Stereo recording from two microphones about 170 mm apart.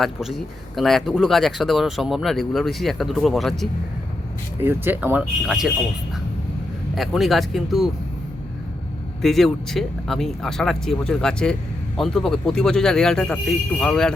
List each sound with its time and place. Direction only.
0.0 s speech: centre (ahead or behind)
4.6 s speech: 10° right (ahead or behind)
6.9 s speech: centre (ahead or behind)
9.2 s speech: centre (ahead or behind)